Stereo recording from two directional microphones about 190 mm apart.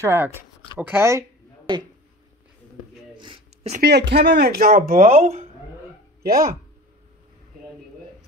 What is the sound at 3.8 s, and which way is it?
Speech, 60° right (ahead or behind).